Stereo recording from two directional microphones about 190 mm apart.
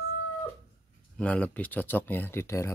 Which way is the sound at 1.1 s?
5° left (ahead or behind).